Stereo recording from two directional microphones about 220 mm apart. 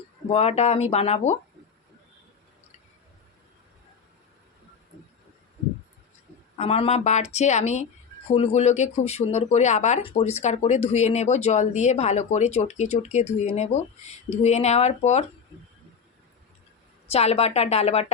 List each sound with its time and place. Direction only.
0.3 s speech: 30° left (ahead or behind)
6.6 s speech: 25° left (ahead or behind)
17.1 s speech: 30° left (ahead or behind)